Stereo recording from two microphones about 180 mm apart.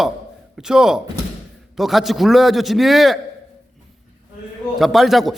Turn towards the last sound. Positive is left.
turn(degrees=0)  # may be behind; listen again after turning